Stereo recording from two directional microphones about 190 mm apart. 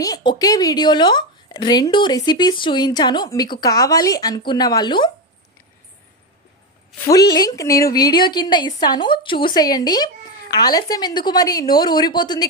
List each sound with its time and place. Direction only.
0.0 s a woman's voice: 20° left (ahead or behind)
7.1 s a woman's voice: 20° left (ahead or behind)